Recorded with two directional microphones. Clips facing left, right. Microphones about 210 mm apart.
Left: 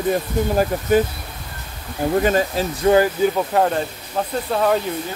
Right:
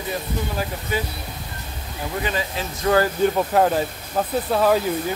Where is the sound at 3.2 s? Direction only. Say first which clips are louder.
Even; centre (ahead or behind).